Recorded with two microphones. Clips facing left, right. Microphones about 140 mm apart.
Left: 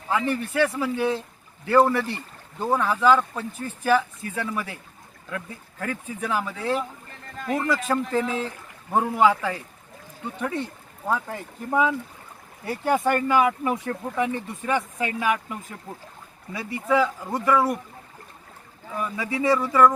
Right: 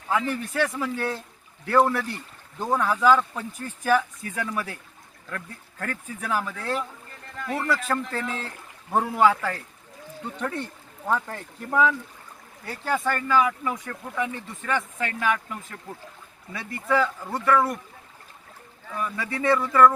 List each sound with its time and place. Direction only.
0.1 s speech: 5° left (ahead or behind)
7.3 s speech: 20° left (ahead or behind)
18.9 s speech: 10° left (ahead or behind)